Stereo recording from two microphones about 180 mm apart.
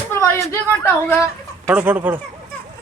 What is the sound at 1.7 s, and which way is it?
Speech, 10° right (ahead or behind).